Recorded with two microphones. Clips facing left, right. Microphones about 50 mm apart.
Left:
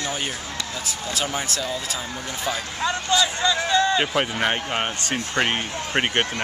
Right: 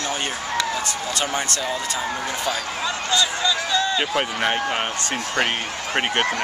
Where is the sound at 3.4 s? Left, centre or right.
Left.